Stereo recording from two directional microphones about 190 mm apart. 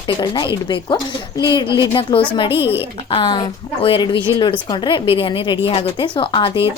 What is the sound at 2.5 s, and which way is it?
Speech, 10° right (ahead or behind).